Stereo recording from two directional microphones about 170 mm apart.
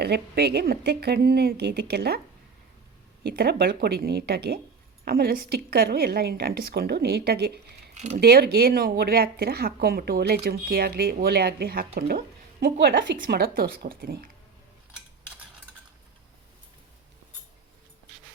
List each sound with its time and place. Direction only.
0.0 s a woman's voice: 70° right (ahead or behind)
3.2 s a woman's voice: 65° right (ahead or behind)
7.9 s speech: 40° right (ahead or behind)
8.2 s speech: 70° right (ahead or behind)
12.8 s a woman's voice: 90° right
13.1 s speech: 60° right (ahead or behind)